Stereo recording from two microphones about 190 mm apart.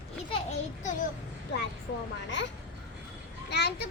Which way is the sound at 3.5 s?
60° left (ahead or behind).